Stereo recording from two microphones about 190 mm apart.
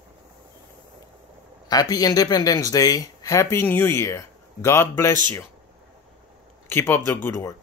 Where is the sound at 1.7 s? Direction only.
20° left (ahead or behind).